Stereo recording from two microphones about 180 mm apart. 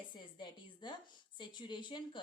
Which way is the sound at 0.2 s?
25° left (ahead or behind).